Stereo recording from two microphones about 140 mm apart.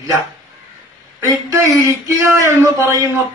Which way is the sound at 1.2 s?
20° right (ahead or behind).